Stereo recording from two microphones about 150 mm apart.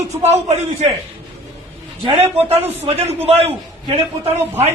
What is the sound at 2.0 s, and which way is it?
A man's voice, 45° right (ahead or behind).